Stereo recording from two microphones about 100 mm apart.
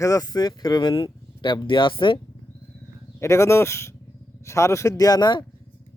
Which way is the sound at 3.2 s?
30° left (ahead or behind).